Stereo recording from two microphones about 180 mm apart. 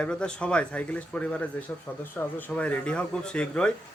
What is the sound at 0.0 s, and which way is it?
A man's voice, 5° left (ahead or behind).